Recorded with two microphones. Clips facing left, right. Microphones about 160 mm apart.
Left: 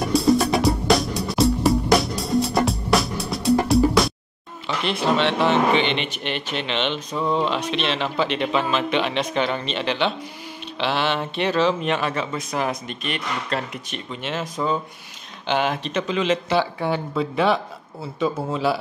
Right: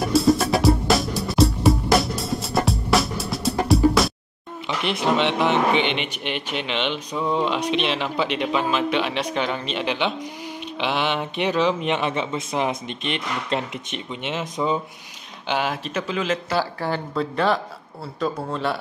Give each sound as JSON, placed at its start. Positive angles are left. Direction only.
{"t": 0.1, "sound": "music", "side_deg": 0}
{"t": 4.6, "sound": "a man's voice", "side_deg": -15}
{"t": 15.4, "sound": "a man's voice", "side_deg": -5}